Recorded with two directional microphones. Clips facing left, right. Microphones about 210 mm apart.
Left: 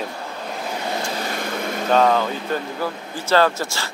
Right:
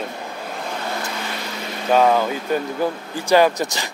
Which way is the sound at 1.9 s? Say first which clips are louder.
Right 1 dB; 10° right (ahead or behind).